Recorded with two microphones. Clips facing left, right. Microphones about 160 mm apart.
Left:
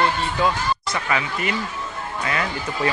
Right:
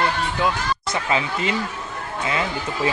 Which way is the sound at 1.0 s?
25° right (ahead or behind).